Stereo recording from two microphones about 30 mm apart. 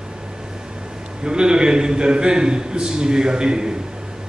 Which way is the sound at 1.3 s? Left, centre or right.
Right.